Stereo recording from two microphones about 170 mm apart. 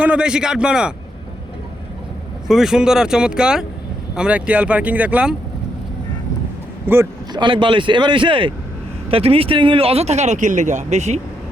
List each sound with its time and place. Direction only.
0.0 s speech: 5° right (ahead or behind)
2.5 s speech: 5° right (ahead or behind)
6.8 s speech: 15° right (ahead or behind)
7.3 s a man's voice: 30° right (ahead or behind)